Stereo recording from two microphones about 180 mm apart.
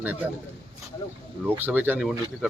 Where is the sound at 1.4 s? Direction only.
10° right (ahead or behind).